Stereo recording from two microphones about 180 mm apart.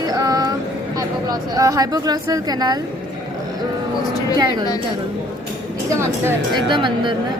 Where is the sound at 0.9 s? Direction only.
20° right (ahead or behind).